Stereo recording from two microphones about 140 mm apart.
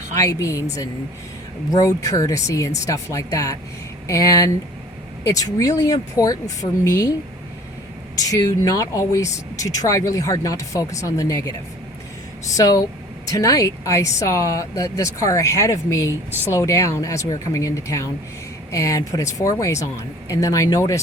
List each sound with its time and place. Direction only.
0.1 s speech: 25° left (ahead or behind)
8.2 s speech: 25° left (ahead or behind)
16.3 s a woman's voice: 15° right (ahead or behind)
16.6 s speech: 20° left (ahead or behind)